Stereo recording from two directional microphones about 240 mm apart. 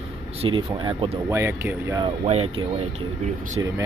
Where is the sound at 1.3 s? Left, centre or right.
Centre.